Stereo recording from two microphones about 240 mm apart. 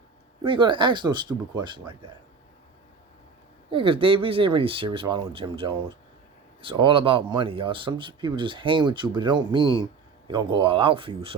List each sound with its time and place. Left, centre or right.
0.4 s speech: right
3.7 s speech: right